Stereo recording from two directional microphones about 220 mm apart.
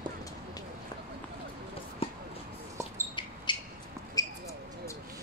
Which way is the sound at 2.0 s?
25° left (ahead or behind).